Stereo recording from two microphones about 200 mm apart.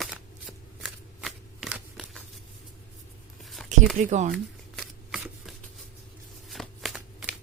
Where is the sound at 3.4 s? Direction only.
Centre (ahead or behind).